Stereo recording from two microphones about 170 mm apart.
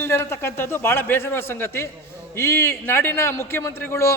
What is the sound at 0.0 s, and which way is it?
A man's voice, 15° left (ahead or behind).